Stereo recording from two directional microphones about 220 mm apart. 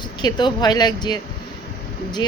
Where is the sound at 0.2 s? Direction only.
20° left (ahead or behind).